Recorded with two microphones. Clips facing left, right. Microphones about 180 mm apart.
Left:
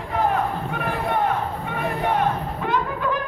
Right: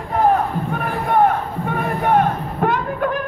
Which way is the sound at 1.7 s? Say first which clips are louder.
Right 6 dB; 50° right (ahead or behind).